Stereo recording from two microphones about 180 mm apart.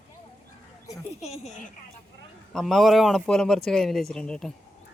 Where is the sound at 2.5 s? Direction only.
Centre (ahead or behind).